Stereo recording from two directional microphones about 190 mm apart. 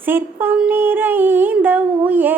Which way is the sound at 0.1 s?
10° right (ahead or behind).